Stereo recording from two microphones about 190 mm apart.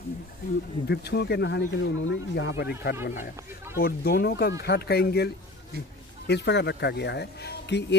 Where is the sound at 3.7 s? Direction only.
55° left (ahead or behind).